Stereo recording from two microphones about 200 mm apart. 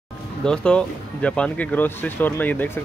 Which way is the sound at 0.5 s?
5° left (ahead or behind).